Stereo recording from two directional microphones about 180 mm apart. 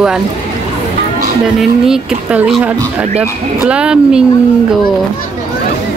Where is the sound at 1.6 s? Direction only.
5° right (ahead or behind).